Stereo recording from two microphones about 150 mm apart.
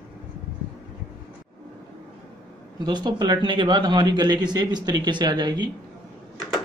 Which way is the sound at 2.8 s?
30° right (ahead or behind).